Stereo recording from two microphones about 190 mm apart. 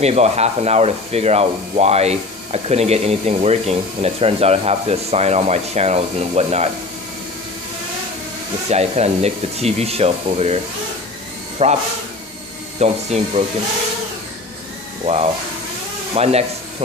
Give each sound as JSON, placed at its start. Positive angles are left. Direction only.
{"t": 0.0, "sound": "speech", "side_deg": -35}
{"t": 8.6, "sound": "speech", "side_deg": -35}
{"t": 11.6, "sound": "speech", "side_deg": -35}
{"t": 16.2, "sound": "speech", "side_deg": -35}